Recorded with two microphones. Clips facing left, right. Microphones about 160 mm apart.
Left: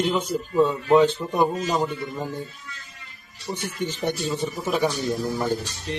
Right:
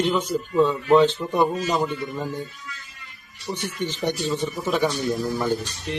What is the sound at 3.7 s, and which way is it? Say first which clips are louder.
Speech: right 1 dB; 10° left (ahead or behind).